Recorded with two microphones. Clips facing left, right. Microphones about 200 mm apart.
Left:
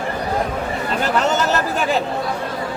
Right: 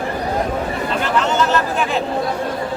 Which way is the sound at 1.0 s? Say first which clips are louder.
Even; 40° left (ahead or behind).